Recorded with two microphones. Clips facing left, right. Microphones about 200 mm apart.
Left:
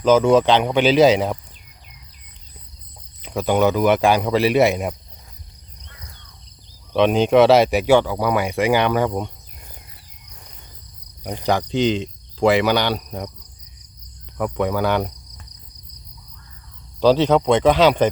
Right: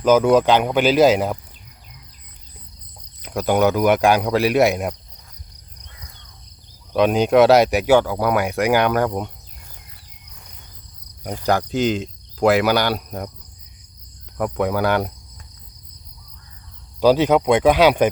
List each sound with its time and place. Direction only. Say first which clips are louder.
0.0 s speech: even; 10° right (ahead or behind)
3.2 s speech: even; 5° right (ahead or behind)
6.9 s speech: even; 5° right (ahead or behind)
11.4 s speech: even; 5° right (ahead or behind)
14.3 s speech: even; centre (ahead or behind)
17.0 s speech: even; 10° right (ahead or behind)